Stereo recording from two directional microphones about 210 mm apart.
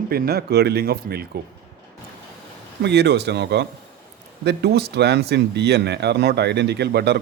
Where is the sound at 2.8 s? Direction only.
55° right (ahead or behind).